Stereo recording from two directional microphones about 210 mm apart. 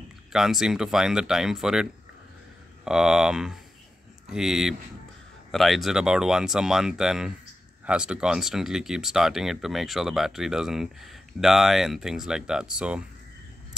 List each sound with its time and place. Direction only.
0.3 s speech: centre (ahead or behind)